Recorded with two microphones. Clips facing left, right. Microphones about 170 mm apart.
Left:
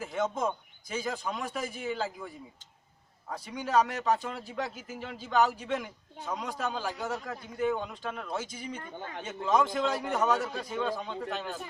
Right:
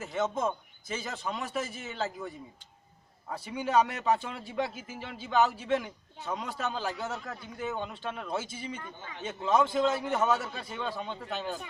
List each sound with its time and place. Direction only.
0.0 s a man's voice: centre (ahead or behind)
8.7 s speech: 55° left (ahead or behind)
9.2 s a man's voice: centre (ahead or behind)